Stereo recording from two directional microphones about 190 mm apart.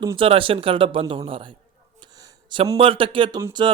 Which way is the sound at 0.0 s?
25° right (ahead or behind).